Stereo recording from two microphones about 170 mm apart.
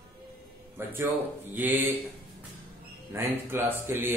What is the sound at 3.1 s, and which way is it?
A man's voice, 15° right (ahead or behind).